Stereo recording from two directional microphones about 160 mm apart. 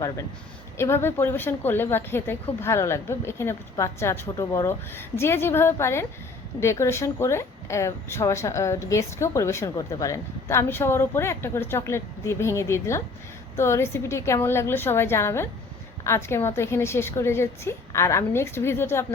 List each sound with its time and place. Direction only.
0.8 s speech: 15° left (ahead or behind)